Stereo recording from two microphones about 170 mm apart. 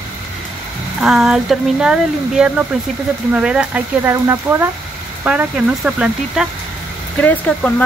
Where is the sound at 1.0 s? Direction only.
Centre (ahead or behind).